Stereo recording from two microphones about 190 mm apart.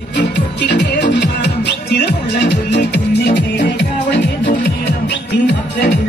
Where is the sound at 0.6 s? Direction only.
65° left (ahead or behind).